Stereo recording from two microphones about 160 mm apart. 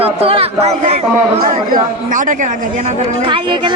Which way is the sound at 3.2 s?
30° right (ahead or behind).